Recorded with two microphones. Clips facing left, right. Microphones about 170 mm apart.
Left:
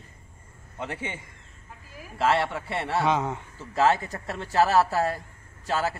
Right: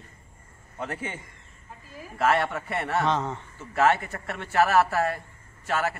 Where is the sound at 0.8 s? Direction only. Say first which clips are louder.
Right 1 dB; 25° left (ahead or behind).